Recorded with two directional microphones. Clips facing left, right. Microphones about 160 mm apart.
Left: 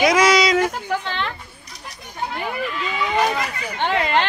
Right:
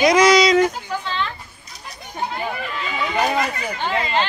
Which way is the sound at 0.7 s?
65° left (ahead or behind).